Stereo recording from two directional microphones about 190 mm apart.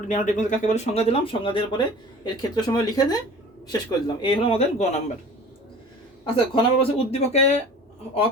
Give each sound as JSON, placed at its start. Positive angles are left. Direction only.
{"t": 0.1, "sound": "speech", "side_deg": 40}
{"t": 6.5, "sound": "speech", "side_deg": 30}